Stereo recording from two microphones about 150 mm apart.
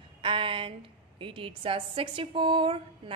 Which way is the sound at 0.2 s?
35° right (ahead or behind).